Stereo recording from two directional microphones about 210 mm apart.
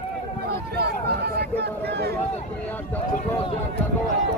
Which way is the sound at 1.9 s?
50° right (ahead or behind).